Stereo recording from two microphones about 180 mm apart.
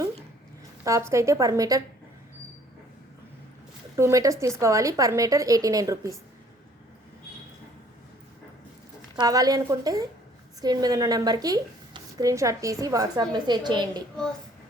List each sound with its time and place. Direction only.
0.9 s a woman's voice: 15° right (ahead or behind)
3.9 s a woman's voice: 15° right (ahead or behind)
9.1 s a woman's voice: 20° right (ahead or behind)